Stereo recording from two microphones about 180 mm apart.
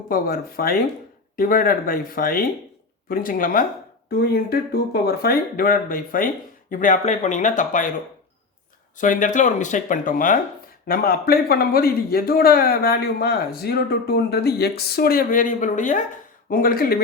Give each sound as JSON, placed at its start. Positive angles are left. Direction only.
{"t": 0.1, "sound": "a man's voice", "side_deg": 55}
{"t": 4.1, "sound": "speech", "side_deg": 60}
{"t": 9.0, "sound": "a man's voice", "side_deg": 45}